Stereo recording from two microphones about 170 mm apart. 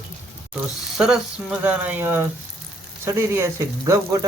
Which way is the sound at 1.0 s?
5° right (ahead or behind).